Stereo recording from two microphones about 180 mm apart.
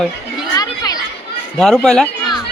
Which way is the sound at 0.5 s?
20° left (ahead or behind).